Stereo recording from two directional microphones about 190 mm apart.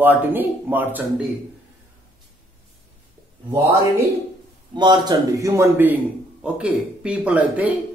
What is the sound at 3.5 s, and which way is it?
Speech, 15° right (ahead or behind).